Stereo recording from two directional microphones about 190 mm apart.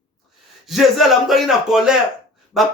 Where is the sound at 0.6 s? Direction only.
Centre (ahead or behind).